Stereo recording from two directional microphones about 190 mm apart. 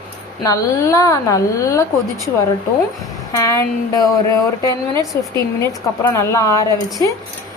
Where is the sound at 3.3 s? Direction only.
15° left (ahead or behind).